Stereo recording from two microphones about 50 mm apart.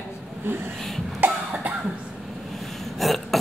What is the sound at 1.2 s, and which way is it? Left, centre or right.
Cough, right.